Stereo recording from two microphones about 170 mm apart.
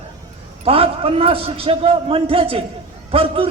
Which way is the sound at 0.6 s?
35° right (ahead or behind).